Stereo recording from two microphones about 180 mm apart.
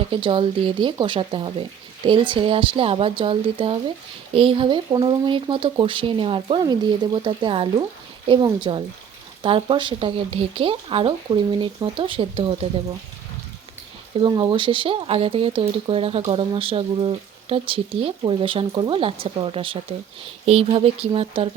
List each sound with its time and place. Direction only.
0.1 s speech: 30° right (ahead or behind)
14.2 s speech: 25° right (ahead or behind)